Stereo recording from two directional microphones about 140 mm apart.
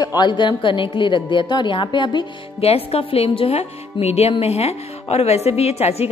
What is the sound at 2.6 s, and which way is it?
A woman's voice, 45° left (ahead or behind).